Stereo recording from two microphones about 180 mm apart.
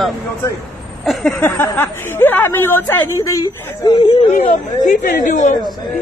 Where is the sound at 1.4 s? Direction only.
10° left (ahead or behind).